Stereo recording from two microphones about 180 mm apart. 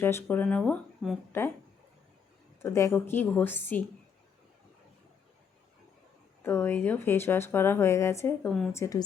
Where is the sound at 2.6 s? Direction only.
15° left (ahead or behind).